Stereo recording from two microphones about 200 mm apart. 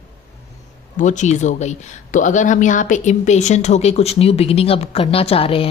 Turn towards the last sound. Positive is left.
turn(degrees=30)  # may be behind; listen again after turning